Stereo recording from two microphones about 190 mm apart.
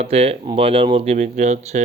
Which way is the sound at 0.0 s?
30° right (ahead or behind).